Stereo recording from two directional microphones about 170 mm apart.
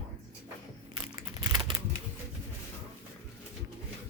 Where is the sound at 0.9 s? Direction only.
20° right (ahead or behind).